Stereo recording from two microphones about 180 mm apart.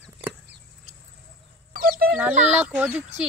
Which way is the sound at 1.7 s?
55° right (ahead or behind).